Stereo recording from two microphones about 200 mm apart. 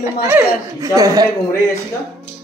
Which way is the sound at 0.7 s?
15° right (ahead or behind).